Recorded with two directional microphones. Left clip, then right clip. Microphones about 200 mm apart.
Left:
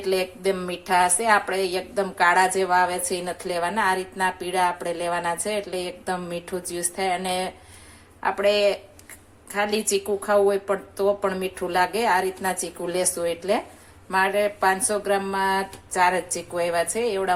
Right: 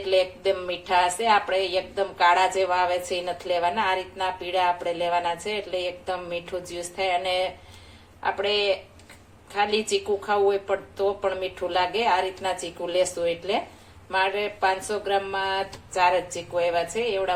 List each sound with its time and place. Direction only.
0.6 s a woman's voice: 45° left (ahead or behind)